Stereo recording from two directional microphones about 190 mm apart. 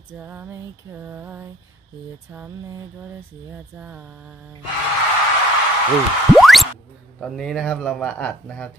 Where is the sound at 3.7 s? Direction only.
5° right (ahead or behind).